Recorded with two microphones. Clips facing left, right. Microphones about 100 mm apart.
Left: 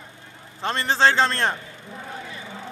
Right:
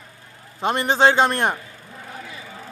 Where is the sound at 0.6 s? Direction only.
15° right (ahead or behind).